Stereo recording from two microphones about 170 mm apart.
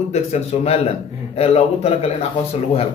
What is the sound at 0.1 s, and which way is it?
A man's voice, 40° left (ahead or behind).